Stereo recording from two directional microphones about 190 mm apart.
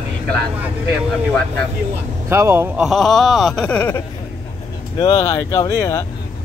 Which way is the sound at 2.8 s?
Centre (ahead or behind).